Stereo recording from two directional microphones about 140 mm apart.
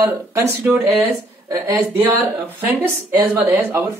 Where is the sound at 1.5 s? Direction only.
20° right (ahead or behind).